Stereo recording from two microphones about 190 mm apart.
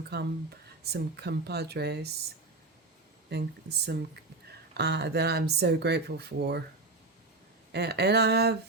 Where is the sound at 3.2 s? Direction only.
60° right (ahead or behind).